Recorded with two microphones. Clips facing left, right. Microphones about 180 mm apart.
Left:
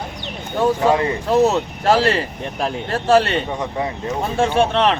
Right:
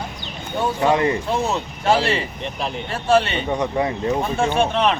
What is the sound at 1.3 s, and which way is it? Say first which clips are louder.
Speech: left 7 dB; 40° left (ahead or behind).